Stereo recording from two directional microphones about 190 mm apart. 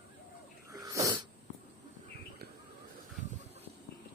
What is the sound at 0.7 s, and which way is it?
Sneeze, 20° right (ahead or behind).